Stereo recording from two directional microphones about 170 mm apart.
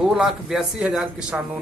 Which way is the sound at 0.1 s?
5° right (ahead or behind).